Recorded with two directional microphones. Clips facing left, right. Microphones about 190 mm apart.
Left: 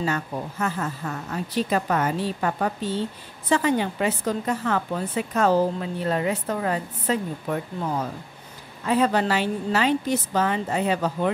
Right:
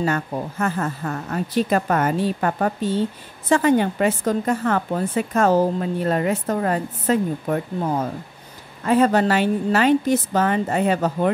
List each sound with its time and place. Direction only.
0.0 s a woman's voice: 55° right (ahead or behind)